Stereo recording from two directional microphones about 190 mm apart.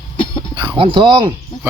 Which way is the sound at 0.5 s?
20° right (ahead or behind).